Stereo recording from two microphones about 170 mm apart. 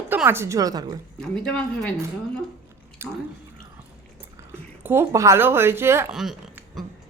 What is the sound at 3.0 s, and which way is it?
Speech, 15° right (ahead or behind).